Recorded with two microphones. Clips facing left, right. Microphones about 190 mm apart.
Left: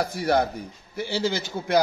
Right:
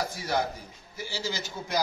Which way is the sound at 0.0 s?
60° left (ahead or behind).